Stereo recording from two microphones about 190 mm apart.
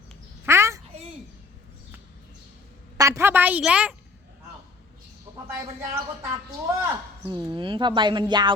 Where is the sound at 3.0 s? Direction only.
15° right (ahead or behind).